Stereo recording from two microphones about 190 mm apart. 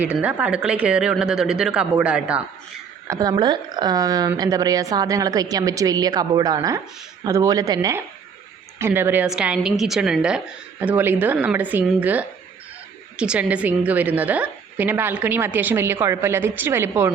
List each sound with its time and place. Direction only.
0.0 s speech: 5° right (ahead or behind)
3.1 s a woman's voice: 20° right (ahead or behind)